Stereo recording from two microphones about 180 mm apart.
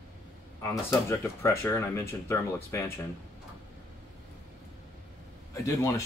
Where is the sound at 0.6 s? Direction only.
15° left (ahead or behind).